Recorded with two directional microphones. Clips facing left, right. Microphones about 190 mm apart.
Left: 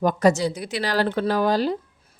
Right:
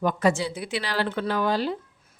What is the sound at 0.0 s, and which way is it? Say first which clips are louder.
A woman's voice: left 4 dB; 40° left (ahead or behind).